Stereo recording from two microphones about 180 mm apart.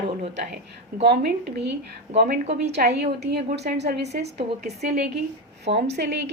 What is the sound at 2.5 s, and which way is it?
Speech, 35° right (ahead or behind).